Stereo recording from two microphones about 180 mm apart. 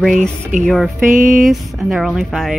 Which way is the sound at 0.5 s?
45° right (ahead or behind).